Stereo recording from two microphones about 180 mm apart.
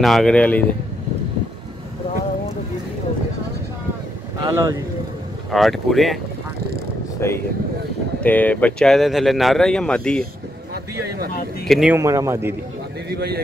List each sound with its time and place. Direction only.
0.0 s speech: centre (ahead or behind)
4.4 s speech: 20° right (ahead or behind)
5.5 s speech: centre (ahead or behind)
7.2 s speech: 15° left (ahead or behind)
11.6 s speech: centre (ahead or behind)
11.9 s a man's voice: 15° right (ahead or behind)
13.1 s a man's voice: 60° right (ahead or behind)